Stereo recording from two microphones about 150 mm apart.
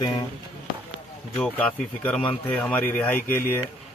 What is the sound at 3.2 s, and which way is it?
Speech, 65° left (ahead or behind).